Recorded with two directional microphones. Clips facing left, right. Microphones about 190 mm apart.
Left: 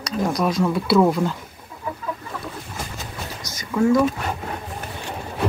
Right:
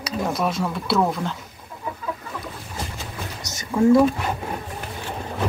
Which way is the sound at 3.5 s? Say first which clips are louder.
Right 2 dB; 25° right (ahead or behind).